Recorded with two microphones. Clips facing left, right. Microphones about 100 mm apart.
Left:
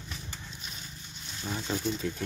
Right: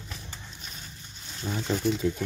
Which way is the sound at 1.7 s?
60° right (ahead or behind).